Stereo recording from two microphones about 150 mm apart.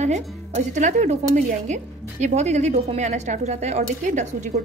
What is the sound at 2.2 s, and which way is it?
A woman's voice, 50° right (ahead or behind).